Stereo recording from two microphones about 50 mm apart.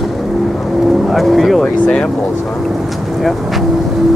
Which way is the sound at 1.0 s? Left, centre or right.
Centre.